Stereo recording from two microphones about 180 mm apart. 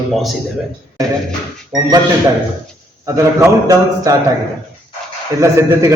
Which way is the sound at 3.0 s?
15° right (ahead or behind).